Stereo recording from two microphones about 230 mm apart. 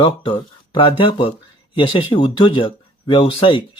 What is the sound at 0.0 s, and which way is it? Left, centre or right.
Speech, left.